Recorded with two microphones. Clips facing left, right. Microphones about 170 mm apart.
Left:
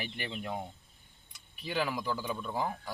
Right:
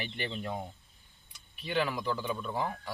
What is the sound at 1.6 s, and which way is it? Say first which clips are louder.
Speech: right 2 dB; 10° left (ahead or behind).